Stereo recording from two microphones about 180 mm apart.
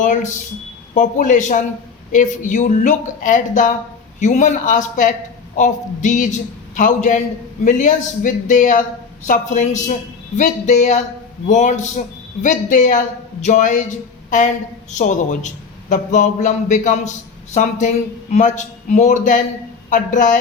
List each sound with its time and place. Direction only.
0.0 s a man's voice: 45° left (ahead or behind)